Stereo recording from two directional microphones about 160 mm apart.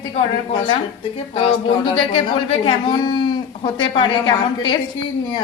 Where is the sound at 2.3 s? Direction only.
35° left (ahead or behind).